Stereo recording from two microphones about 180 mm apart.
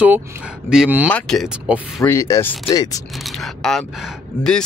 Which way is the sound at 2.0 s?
15° left (ahead or behind).